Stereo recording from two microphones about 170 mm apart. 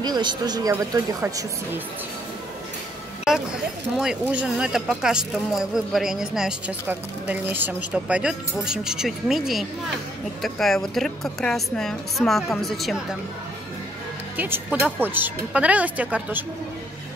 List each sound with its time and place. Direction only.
0.0 s speech: 25° right (ahead or behind)
3.3 s speech: 5° right (ahead or behind)
14.3 s speech: 10° right (ahead or behind)